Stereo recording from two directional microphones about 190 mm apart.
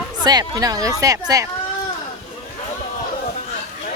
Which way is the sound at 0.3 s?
20° right (ahead or behind).